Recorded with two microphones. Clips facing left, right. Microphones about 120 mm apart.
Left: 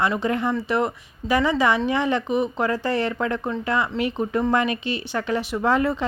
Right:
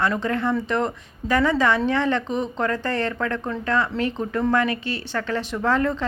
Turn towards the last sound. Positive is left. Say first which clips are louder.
# left 1 dB
turn(degrees=15)  # may be behind; listen again after turning